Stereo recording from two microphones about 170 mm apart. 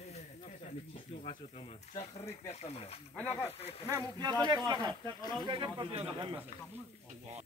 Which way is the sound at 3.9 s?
25° right (ahead or behind).